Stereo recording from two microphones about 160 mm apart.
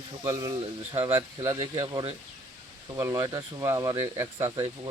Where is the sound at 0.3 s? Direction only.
25° right (ahead or behind).